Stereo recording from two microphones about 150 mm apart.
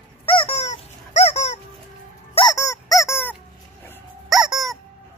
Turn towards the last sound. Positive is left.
turn(degrees=0)  # may be behind; listen again after turning